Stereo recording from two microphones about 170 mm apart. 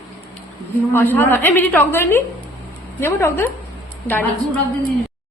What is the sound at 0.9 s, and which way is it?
A woman's voice, 10° left (ahead or behind).